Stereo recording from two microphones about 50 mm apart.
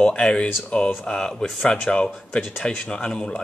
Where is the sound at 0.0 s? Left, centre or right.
Centre.